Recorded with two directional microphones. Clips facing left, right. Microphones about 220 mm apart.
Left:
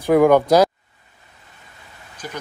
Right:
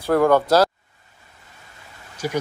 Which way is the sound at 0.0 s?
15° left (ahead or behind).